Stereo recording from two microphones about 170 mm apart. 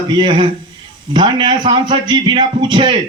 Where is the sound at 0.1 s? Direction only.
30° right (ahead or behind).